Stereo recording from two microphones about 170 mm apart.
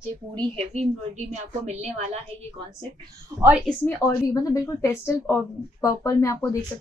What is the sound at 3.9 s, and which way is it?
A woman's voice, 20° left (ahead or behind).